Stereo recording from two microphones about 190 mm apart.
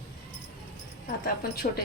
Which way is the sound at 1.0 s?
50° left (ahead or behind).